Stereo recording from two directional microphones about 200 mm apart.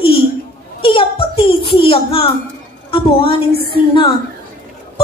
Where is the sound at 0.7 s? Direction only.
25° left (ahead or behind).